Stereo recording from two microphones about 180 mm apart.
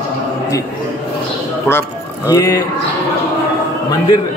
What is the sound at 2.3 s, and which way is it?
Speech, 20° left (ahead or behind).